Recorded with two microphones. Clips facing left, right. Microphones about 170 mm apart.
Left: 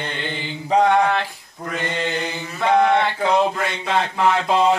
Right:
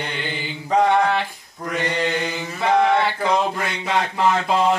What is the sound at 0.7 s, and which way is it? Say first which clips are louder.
Mantra: left 1 dB; 10° left (ahead or behind).